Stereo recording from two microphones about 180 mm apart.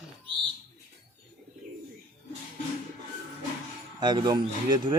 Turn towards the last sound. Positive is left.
turn(degrees=-20)  # may be behind; listen again after turning